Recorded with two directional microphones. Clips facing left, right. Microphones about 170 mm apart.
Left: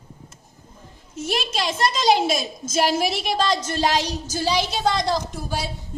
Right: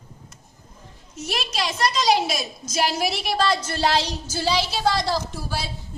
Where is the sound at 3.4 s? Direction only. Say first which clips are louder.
Even; 20° left (ahead or behind).